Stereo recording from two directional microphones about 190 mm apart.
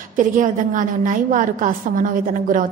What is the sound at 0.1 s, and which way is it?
A woman's voice, 45° right (ahead or behind).